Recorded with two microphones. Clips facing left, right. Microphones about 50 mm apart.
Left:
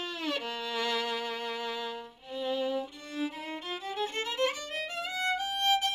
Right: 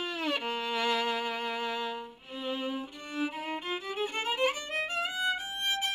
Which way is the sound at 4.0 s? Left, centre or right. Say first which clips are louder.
Even; centre.